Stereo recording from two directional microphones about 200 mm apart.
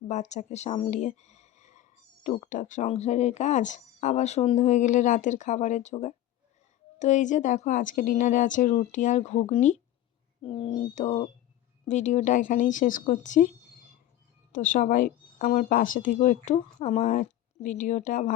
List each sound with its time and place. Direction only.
0.1 s speech: 35° left (ahead or behind)
14.5 s speech: 40° left (ahead or behind)